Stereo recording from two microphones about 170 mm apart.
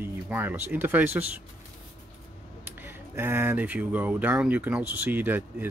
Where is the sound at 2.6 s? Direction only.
10° right (ahead or behind).